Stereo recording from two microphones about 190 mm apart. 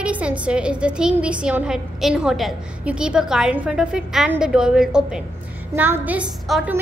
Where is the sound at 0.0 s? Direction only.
5° right (ahead or behind).